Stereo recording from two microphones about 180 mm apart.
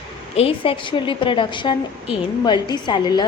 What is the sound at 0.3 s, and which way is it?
A woman's voice, 30° left (ahead or behind).